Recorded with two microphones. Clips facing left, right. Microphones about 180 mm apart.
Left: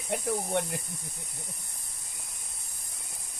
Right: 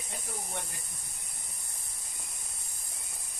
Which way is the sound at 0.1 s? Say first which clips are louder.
Left 13 dB; 65° left (ahead or behind).